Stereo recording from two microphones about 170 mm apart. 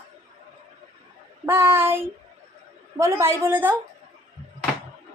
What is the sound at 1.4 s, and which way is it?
A child's voice, 15° right (ahead or behind).